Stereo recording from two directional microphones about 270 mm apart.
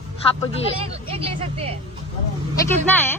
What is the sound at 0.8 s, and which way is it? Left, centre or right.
Speech, right.